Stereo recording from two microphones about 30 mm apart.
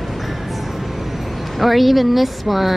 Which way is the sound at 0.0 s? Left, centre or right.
Centre.